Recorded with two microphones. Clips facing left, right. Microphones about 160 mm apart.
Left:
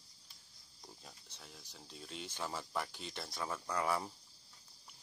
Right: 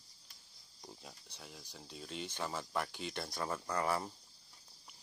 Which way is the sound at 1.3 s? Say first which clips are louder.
Right 4 dB; centre (ahead or behind).